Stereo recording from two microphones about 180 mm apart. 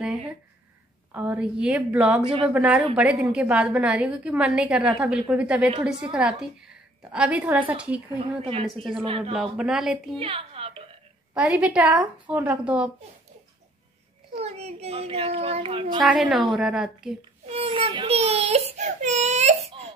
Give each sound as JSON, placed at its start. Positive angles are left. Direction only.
{"t": 1.1, "sound": "a woman's voice", "side_deg": -10}
{"t": 8.4, "sound": "speech", "side_deg": -30}
{"t": 8.6, "sound": "a woman's voice", "side_deg": 0}
{"t": 9.0, "sound": "speech", "side_deg": -30}
{"t": 9.3, "sound": "a woman's voice", "side_deg": -5}
{"t": 10.1, "sound": "a woman's voice", "side_deg": -30}
{"t": 11.3, "sound": "a woman's voice", "side_deg": -5}
{"t": 14.4, "sound": "speech", "side_deg": -35}
{"t": 16.0, "sound": "a woman's voice", "side_deg": -5}
{"t": 17.5, "sound": "speech", "side_deg": -30}